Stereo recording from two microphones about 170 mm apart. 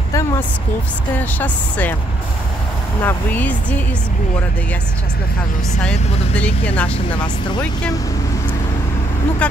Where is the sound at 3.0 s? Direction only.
10° left (ahead or behind).